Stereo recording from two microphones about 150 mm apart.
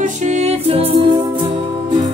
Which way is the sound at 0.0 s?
50° right (ahead or behind).